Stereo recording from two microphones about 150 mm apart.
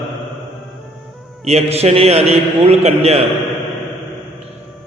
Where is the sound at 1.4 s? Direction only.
45° right (ahead or behind).